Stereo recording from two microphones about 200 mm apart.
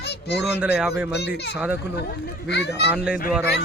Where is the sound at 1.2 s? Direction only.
60° left (ahead or behind).